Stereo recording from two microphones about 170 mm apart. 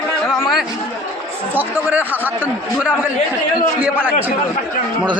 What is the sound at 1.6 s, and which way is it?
A man's voice, 10° right (ahead or behind).